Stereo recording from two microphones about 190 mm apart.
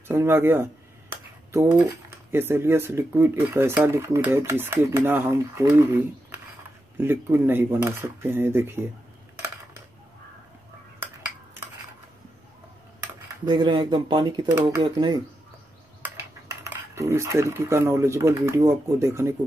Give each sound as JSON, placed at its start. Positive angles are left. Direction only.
{"t": 0.1, "sound": "speech", "side_deg": -10}
{"t": 13.5, "sound": "speech", "side_deg": -20}
{"t": 16.6, "sound": "speech", "side_deg": -15}